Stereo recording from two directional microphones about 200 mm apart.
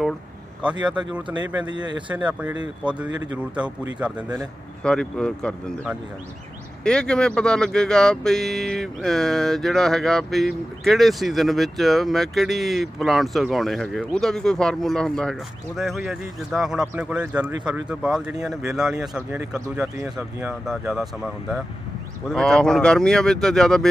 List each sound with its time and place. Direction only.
0.8 s speech: 5° right (ahead or behind)
1.6 s speech: 20° right (ahead or behind)
2.0 s speech: 5° right (ahead or behind)
3.1 s speech: 20° right (ahead or behind)
3.3 s speech: 5° right (ahead or behind)